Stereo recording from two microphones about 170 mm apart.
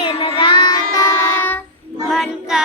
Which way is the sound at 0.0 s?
30° left (ahead or behind).